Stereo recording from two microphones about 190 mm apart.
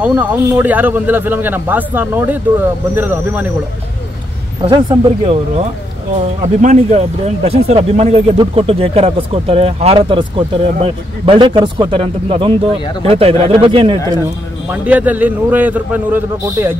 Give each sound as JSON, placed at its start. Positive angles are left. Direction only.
{"t": 0.0, "sound": "speech", "side_deg": -10}
{"t": 4.6, "sound": "speech", "side_deg": -25}
{"t": 6.4, "sound": "speech", "side_deg": -40}
{"t": 14.7, "sound": "speech", "side_deg": -10}